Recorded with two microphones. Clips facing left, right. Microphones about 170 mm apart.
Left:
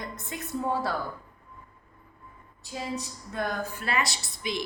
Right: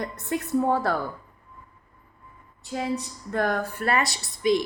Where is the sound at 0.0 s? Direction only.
65° right (ahead or behind).